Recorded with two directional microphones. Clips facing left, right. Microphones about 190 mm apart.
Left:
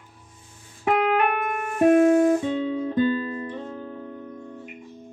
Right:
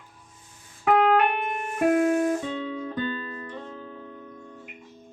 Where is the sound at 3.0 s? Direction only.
15° left (ahead or behind).